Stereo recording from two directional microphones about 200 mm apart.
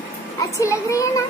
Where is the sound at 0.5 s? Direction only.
15° left (ahead or behind).